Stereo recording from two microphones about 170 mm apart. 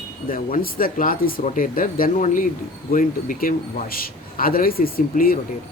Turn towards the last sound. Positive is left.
turn(degrees=55)  # may be behind; listen again after turning